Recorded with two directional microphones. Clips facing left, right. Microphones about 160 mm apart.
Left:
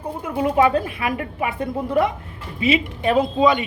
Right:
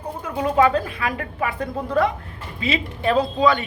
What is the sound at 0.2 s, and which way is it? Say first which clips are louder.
A woman's voice: left 1 dB; 25° left (ahead or behind).